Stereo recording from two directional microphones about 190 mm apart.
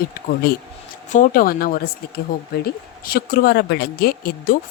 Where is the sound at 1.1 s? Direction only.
45° left (ahead or behind).